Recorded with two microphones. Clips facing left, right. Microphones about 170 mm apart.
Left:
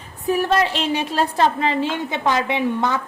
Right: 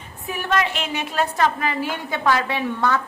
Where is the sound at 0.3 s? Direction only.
35° left (ahead or behind).